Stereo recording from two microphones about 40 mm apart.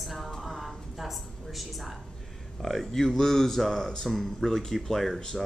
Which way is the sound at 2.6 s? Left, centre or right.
Centre.